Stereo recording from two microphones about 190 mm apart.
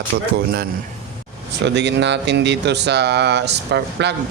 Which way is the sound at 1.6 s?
65° right (ahead or behind).